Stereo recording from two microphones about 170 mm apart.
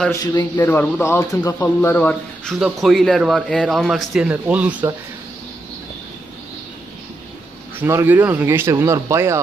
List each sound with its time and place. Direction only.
0.1 s a man's voice: 25° left (ahead or behind)
0.7 s a man's voice: 10° left (ahead or behind); by 4.9 s 10° right (ahead or behind)
7.8 s speech: 10° right (ahead or behind)